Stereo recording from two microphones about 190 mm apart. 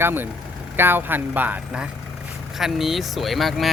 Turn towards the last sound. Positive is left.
turn(degrees=0)  # may be behind; listen again after turning